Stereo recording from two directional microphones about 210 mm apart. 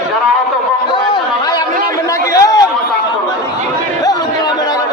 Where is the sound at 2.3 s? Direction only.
15° left (ahead or behind).